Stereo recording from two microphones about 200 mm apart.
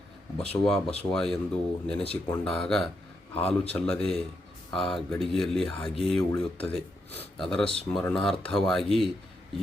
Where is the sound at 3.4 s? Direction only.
30° left (ahead or behind).